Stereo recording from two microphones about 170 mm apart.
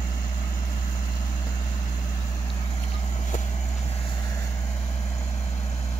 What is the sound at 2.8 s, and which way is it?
Vehicle, 45° left (ahead or behind).